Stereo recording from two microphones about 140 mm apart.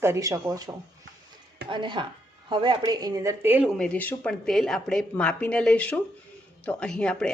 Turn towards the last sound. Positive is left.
turn(degrees=5)  # may be behind; listen again after turning